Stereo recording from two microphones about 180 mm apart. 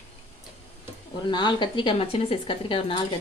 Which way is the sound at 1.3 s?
25° left (ahead or behind).